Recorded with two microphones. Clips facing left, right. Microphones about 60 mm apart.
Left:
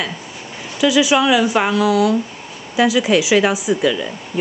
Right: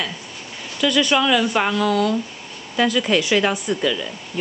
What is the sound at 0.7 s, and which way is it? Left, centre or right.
Speech, centre.